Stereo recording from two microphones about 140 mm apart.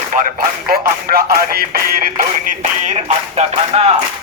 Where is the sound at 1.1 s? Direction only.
90° right; by 3.9 s 45° right (ahead or behind).